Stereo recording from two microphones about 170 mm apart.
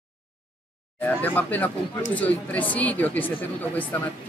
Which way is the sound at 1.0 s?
10° left (ahead or behind).